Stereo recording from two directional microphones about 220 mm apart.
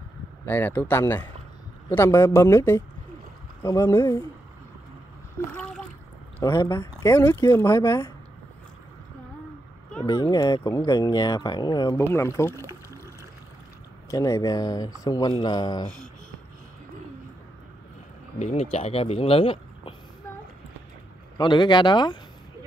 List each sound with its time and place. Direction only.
0.5 s speech: 10° left (ahead or behind)
5.5 s a sound: 5° left (ahead or behind)
6.4 s speech: 10° left (ahead or behind)
10.0 s speech: 15° left (ahead or behind)
14.1 s speech: 15° left (ahead or behind)
18.4 s speech: 30° left (ahead or behind)
21.4 s speech: 20° left (ahead or behind)